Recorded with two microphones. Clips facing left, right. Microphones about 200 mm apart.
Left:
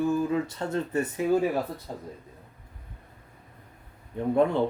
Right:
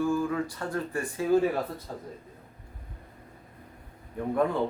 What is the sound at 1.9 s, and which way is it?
Speech, 10° left (ahead or behind).